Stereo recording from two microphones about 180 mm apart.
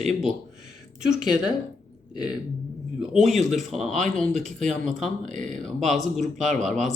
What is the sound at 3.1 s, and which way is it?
Speech, centre (ahead or behind).